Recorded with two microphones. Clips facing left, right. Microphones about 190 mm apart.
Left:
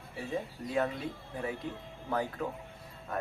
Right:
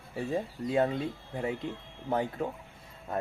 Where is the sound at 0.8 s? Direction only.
30° right (ahead or behind).